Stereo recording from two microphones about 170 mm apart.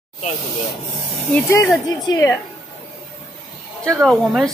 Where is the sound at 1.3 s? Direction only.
15° left (ahead or behind).